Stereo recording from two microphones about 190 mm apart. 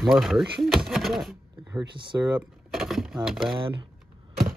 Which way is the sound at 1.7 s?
25° right (ahead or behind).